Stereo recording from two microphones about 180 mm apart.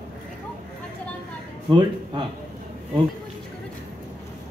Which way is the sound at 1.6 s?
25° right (ahead or behind).